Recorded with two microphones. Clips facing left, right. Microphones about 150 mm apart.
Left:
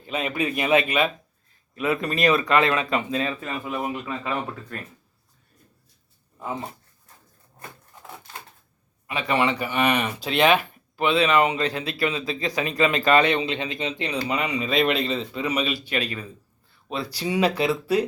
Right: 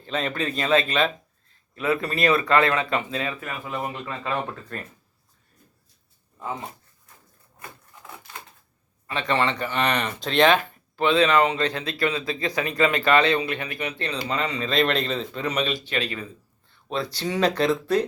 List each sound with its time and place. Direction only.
0.0 s speech: 10° left (ahead or behind); by 3.5 s 25° left (ahead or behind)
3.7 s speech: 10° left (ahead or behind)
9.0 s speech: 10° left (ahead or behind)